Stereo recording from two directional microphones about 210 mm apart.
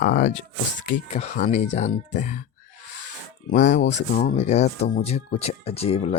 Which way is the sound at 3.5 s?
35° left (ahead or behind).